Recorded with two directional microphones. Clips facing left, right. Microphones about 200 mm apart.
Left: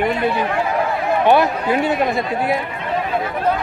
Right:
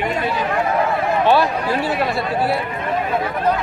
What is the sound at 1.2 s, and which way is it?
Speech, 20° left (ahead or behind).